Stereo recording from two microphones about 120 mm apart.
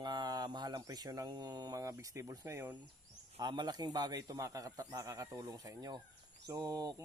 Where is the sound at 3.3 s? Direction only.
35° right (ahead or behind).